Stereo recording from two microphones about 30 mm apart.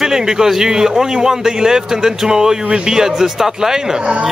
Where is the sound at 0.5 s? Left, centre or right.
Centre.